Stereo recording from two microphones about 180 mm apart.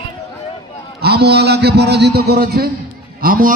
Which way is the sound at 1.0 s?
65° right (ahead or behind).